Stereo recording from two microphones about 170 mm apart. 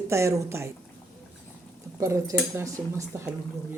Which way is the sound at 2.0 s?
20° right (ahead or behind).